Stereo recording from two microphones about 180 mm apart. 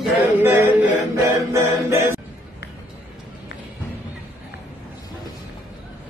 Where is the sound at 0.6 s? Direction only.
15° right (ahead or behind).